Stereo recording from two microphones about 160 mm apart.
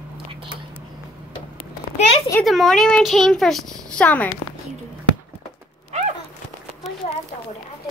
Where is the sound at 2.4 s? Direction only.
Centre (ahead or behind).